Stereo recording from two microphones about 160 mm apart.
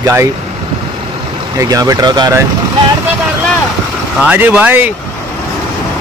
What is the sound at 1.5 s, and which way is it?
Speech, 20° right (ahead or behind).